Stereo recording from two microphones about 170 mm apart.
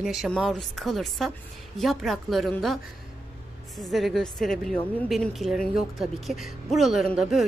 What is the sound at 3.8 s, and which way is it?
A woman's voice, centre (ahead or behind).